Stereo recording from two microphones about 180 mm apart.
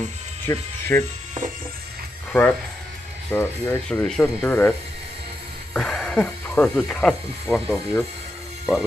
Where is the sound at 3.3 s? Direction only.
15° left (ahead or behind); by 7.6 s centre (ahead or behind).